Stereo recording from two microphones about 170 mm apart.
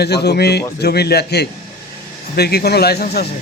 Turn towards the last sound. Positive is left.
turn(degrees=70)  # may be behind; listen again after turning